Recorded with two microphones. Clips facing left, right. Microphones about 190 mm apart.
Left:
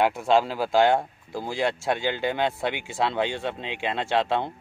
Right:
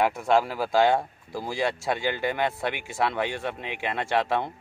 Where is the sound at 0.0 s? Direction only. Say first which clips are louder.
Left 1 dB; 25° left (ahead or behind).